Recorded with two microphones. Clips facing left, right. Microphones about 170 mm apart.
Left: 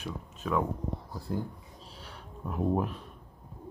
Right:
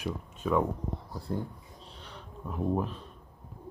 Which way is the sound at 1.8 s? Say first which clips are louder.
Right 2 dB; 5° left (ahead or behind).